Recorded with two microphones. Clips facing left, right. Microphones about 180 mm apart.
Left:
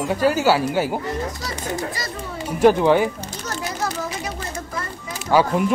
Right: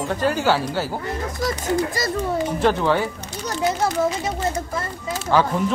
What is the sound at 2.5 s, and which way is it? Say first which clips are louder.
Speech: left 7 dB; 10° left (ahead or behind).